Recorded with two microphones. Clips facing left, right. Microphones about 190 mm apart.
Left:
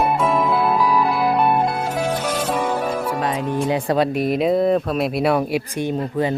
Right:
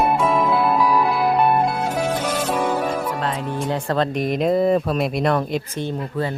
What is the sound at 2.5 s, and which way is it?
Music, 10° left (ahead or behind).